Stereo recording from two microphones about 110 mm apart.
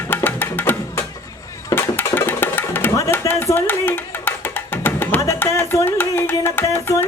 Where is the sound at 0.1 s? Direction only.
15° left (ahead or behind).